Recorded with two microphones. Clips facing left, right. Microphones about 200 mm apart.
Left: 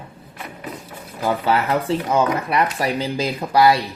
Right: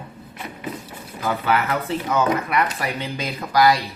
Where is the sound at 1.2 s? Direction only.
30° left (ahead or behind).